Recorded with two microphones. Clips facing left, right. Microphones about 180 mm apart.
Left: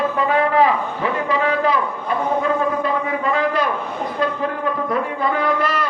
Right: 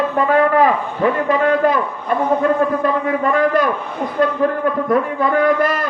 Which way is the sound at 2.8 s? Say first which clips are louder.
Right 4 dB; 50° right (ahead or behind).